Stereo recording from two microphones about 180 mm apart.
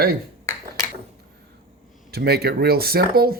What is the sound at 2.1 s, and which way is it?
Speech, 60° right (ahead or behind).